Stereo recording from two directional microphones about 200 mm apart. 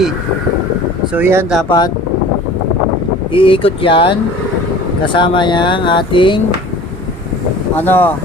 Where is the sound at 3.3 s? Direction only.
25° left (ahead or behind).